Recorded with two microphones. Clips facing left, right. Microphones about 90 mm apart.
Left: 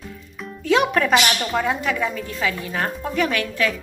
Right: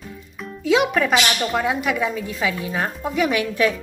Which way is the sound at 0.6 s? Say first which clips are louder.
Even; 5° right (ahead or behind).